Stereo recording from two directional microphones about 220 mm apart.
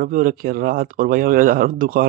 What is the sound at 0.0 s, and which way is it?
Speech, 40° right (ahead or behind).